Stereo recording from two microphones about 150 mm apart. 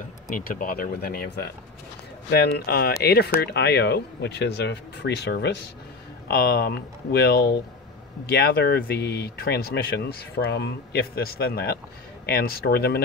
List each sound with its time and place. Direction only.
0.3 s speech: 70° left (ahead or behind); by 13.0 s 90° left